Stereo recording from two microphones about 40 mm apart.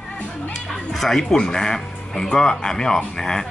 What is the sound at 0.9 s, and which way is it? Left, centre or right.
Speech, centre.